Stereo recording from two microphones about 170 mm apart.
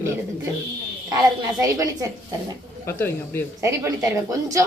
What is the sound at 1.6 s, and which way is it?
Speech, 20° right (ahead or behind).